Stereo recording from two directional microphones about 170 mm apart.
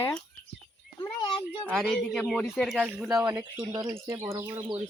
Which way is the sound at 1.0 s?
25° left (ahead or behind).